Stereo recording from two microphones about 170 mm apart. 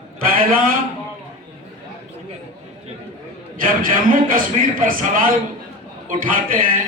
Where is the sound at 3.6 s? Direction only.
55° right (ahead or behind).